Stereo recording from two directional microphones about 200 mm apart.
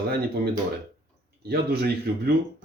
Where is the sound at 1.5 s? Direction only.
50° right (ahead or behind).